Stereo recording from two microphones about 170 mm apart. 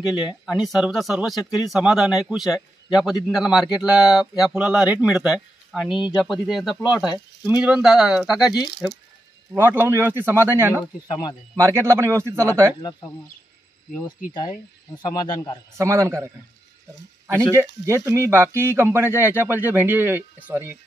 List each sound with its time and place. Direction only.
0.0 s speech: 25° left (ahead or behind)
0.5 s a man's voice: centre (ahead or behind)
15.0 s speech: 25° left (ahead or behind)
15.8 s speech: 15° right (ahead or behind)
17.8 s speech: 15° right (ahead or behind)